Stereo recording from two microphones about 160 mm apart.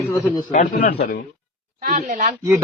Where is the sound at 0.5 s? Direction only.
60° left (ahead or behind).